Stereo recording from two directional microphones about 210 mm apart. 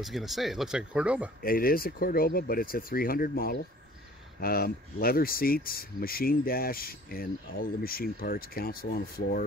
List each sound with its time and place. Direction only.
0.0 s speech: centre (ahead or behind)
1.4 s speech: 45° left (ahead or behind)